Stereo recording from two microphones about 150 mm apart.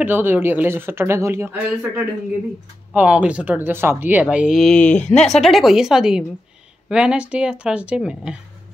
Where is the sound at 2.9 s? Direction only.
10° right (ahead or behind).